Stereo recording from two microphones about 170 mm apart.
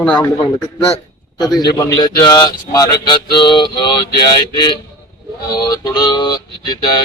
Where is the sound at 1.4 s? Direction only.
25° left (ahead or behind).